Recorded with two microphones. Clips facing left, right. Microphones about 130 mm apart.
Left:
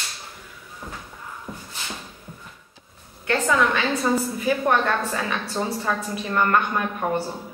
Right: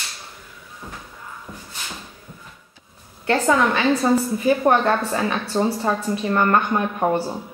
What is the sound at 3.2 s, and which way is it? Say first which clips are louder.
A woman's voice: right 3 dB; 35° right (ahead or behind).